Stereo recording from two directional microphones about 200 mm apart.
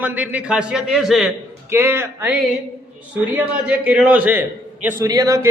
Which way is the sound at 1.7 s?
10° right (ahead or behind).